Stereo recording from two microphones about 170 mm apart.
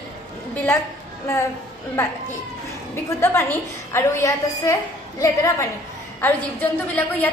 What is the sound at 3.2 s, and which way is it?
A woman's voice, 15° left (ahead or behind).